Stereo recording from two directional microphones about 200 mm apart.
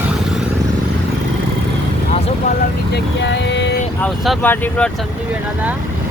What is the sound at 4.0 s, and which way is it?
Speech, 10° left (ahead or behind).